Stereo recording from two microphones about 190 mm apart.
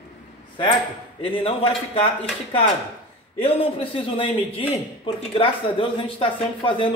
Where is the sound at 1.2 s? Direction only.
30° left (ahead or behind).